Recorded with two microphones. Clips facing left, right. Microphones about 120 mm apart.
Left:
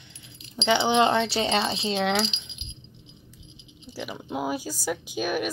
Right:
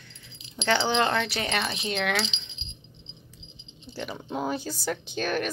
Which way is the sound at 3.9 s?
5° left (ahead or behind).